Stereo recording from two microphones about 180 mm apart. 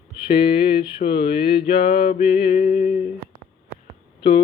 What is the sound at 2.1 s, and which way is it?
Music, 55° left (ahead or behind).